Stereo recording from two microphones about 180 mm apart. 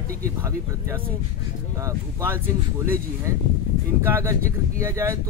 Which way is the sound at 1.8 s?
15° right (ahead or behind).